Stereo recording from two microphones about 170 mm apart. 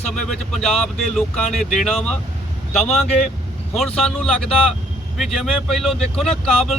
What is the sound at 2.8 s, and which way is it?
Speech, 40° left (ahead or behind).